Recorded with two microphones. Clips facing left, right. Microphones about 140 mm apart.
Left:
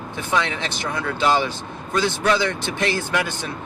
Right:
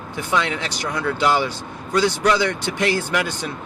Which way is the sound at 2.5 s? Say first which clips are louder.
Right 2 dB; 15° right (ahead or behind).